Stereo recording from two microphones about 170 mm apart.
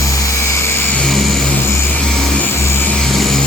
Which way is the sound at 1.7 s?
15° left (ahead or behind).